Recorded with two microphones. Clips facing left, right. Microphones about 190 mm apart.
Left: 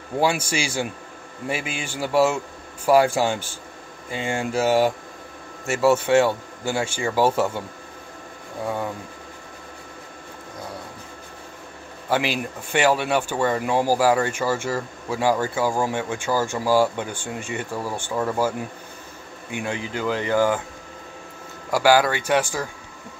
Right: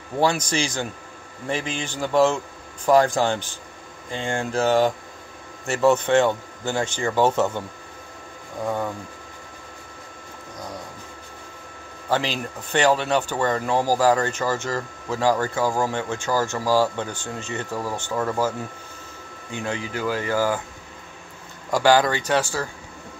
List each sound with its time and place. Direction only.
0.2 s a man's voice: 10° left (ahead or behind)
12.1 s a man's voice: 10° left (ahead or behind)
19.5 s a man's voice: 15° left (ahead or behind)
21.6 s a man's voice: 10° left (ahead or behind)